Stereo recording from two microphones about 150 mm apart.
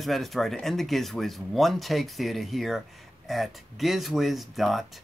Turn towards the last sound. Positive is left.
turn(degrees=0)  # may be behind; listen again after turning